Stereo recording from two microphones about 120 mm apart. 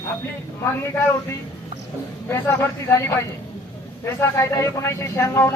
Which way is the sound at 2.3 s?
20° left (ahead or behind).